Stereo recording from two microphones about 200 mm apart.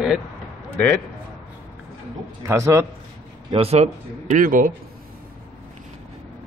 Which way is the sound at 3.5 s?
30° right (ahead or behind).